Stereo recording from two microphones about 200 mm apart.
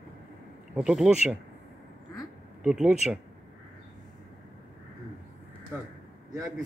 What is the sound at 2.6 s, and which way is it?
Speech, 5° right (ahead or behind).